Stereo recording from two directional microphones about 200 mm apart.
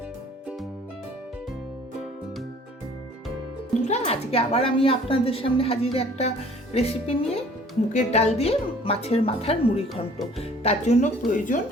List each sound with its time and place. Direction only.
3.8 s a woman's voice: 35° left (ahead or behind)
9.9 s speech: centre (ahead or behind)
10.6 s speech: 35° left (ahead or behind)